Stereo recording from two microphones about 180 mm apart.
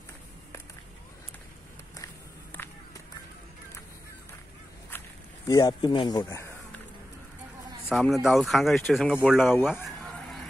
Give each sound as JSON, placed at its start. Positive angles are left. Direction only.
{"t": 2.5, "sound": "run", "side_deg": 10}
{"t": 5.5, "sound": "speech", "side_deg": 20}
{"t": 7.9, "sound": "speech", "side_deg": 0}
{"t": 9.8, "sound": "vehicle", "side_deg": 0}